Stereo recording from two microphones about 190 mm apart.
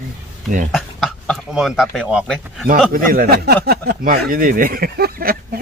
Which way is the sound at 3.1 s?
55° right (ahead or behind).